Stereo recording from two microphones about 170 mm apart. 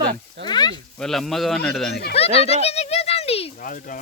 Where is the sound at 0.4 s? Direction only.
25° left (ahead or behind).